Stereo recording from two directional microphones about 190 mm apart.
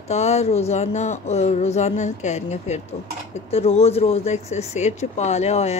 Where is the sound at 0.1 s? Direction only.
35° left (ahead or behind).